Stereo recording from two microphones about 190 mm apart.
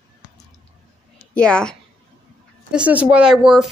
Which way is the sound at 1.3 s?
5° left (ahead or behind).